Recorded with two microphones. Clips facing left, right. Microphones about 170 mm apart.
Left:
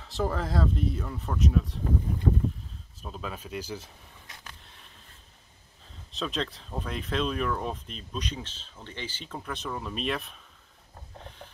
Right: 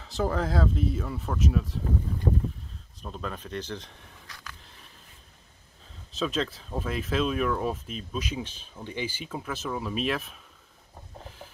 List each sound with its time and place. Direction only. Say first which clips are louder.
0.0 s speech: right 2 dB; centre (ahead or behind)
3.0 s speech: right 2 dB; 5° left (ahead or behind)
4.3 s a sound: right 2 dB; 25° left (ahead or behind)
4.6 s a sound: right 1 dB; centre (ahead or behind)
6.1 s speech: right 3 dB; centre (ahead or behind)
11.1 s pulleys: right 1 dB; 5° right (ahead or behind)